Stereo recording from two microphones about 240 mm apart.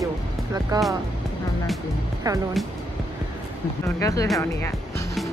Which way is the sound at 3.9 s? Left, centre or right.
Centre.